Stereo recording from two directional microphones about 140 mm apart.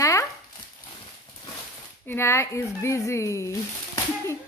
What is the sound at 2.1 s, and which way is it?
A woman's voice, 20° left (ahead or behind).